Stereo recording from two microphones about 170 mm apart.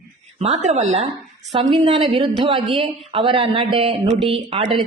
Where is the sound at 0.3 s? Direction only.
40° right (ahead or behind).